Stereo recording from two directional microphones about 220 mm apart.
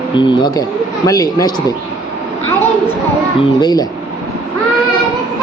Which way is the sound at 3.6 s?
15° left (ahead or behind).